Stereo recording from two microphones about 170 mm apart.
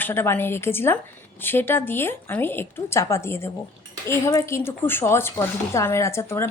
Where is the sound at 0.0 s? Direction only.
15° left (ahead or behind).